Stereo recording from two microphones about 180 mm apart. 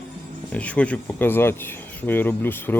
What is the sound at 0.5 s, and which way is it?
Speech, 5° left (ahead or behind).